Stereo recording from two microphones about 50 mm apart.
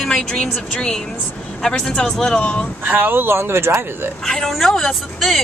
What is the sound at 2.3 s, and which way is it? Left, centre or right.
Speech, left.